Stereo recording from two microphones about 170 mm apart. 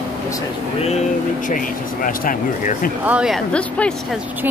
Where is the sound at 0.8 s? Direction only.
45° left (ahead or behind).